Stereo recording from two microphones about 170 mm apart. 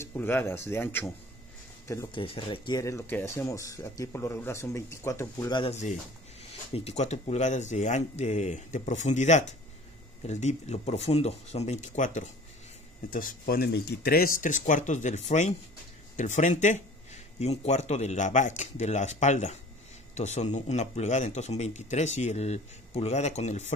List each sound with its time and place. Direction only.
0.0 s speech: 15° left (ahead or behind)
2.1 s speech: 30° left (ahead or behind); by 5.5 s 15° left (ahead or behind)
5.5 s speech: 30° left (ahead or behind)